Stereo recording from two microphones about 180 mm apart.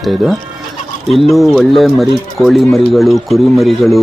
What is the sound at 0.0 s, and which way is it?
Speech, centre (ahead or behind).